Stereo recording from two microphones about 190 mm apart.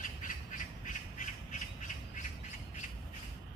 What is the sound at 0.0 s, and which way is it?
Squawk, 45° left (ahead or behind).